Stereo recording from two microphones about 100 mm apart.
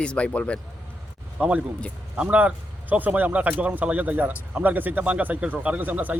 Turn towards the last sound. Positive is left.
turn(degrees=-15)  # may be behind; listen again after turning